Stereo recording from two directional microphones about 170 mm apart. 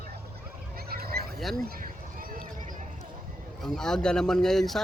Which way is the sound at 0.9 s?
65° right (ahead or behind).